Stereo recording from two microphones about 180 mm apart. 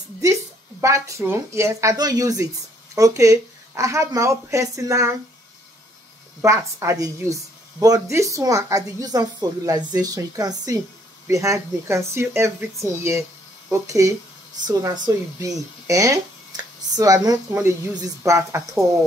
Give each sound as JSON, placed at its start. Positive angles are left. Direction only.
{"t": 0.2, "sound": "a woman's voice", "side_deg": -15}
{"t": 6.4, "sound": "a woman's voice", "side_deg": -15}